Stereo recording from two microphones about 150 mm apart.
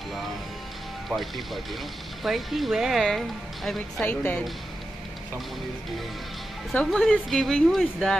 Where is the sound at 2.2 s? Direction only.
Centre (ahead or behind).